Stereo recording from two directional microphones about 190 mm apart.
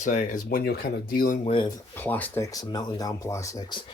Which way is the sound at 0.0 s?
40° left (ahead or behind).